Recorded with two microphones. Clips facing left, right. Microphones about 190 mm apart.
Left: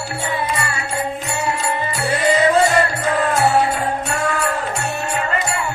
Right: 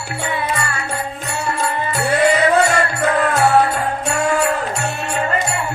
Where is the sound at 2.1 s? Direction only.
60° right (ahead or behind).